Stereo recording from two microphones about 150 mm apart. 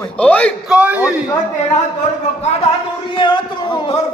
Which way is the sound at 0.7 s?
10° right (ahead or behind).